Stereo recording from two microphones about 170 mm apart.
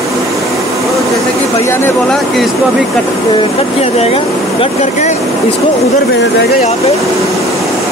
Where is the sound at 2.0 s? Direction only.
Centre (ahead or behind).